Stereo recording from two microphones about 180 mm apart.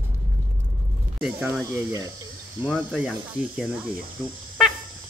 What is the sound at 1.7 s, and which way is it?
Speech, 20° right (ahead or behind).